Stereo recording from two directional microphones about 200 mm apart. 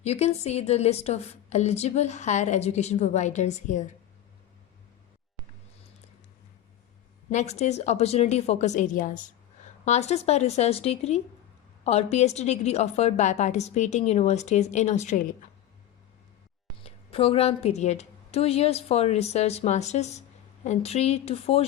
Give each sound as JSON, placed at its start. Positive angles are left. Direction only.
{"t": 0.0, "sound": "a woman's voice", "side_deg": 35}
{"t": 7.3, "sound": "a woman's voice", "side_deg": 35}
{"t": 16.8, "sound": "a woman's voice", "side_deg": 30}